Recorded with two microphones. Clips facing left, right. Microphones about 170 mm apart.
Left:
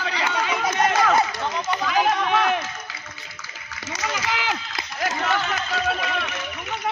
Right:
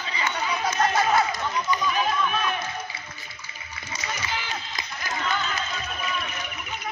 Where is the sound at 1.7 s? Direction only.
85° left.